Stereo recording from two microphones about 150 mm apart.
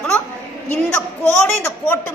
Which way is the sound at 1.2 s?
15° left (ahead or behind).